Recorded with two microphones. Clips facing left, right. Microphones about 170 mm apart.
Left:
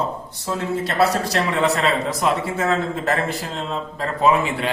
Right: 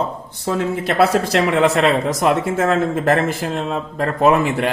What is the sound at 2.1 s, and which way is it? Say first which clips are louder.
A man's voice: right 4 dB; 50° right (ahead or behind).